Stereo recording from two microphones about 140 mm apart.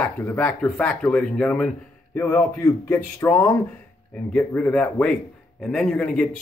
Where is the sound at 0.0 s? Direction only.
15° left (ahead or behind).